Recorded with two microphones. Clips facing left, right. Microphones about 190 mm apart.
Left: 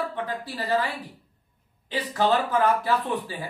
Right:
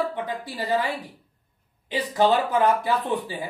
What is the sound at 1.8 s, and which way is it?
Speech, 15° right (ahead or behind).